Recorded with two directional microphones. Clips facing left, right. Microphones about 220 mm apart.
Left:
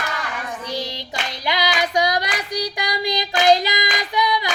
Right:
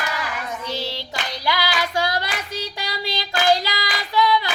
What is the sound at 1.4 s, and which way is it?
Child singing, 20° left (ahead or behind).